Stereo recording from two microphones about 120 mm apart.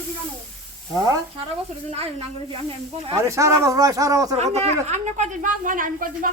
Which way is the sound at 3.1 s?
25° right (ahead or behind).